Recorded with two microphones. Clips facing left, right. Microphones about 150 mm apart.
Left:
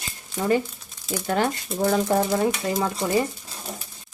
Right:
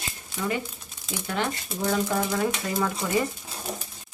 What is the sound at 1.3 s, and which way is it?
Speech, 45° left (ahead or behind).